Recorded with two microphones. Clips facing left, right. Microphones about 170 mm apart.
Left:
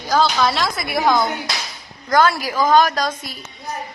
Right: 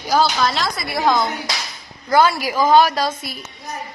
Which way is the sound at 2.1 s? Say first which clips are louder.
Right 1 dB; 10° right (ahead or behind).